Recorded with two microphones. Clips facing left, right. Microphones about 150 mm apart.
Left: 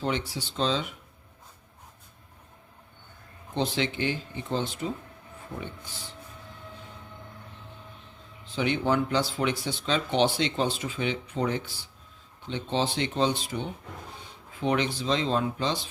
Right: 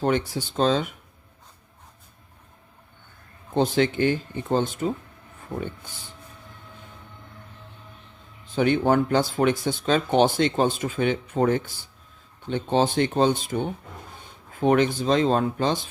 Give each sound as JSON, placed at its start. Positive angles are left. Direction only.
{"t": 0.0, "sound": "speech", "side_deg": -50}
{"t": 3.5, "sound": "speech", "side_deg": -50}
{"t": 8.5, "sound": "speech", "side_deg": -45}